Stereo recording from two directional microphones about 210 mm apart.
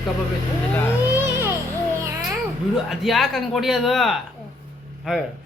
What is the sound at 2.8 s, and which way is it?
Speech, centre (ahead or behind).